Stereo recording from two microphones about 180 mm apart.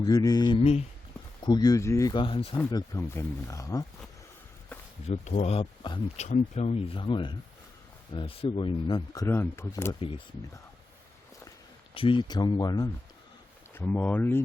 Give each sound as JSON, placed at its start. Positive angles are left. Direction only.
{"t": 0.0, "sound": "speech", "side_deg": 20}
{"t": 1.4, "sound": "speech", "side_deg": 25}
{"t": 2.6, "sound": "speech", "side_deg": 20}
{"t": 5.0, "sound": "speech", "side_deg": 35}
{"t": 6.1, "sound": "speech", "side_deg": 40}
{"t": 11.9, "sound": "speech", "side_deg": 30}